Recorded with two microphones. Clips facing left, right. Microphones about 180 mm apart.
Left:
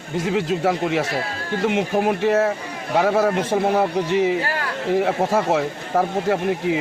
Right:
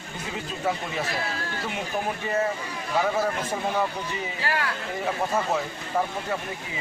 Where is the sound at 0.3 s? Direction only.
80° left.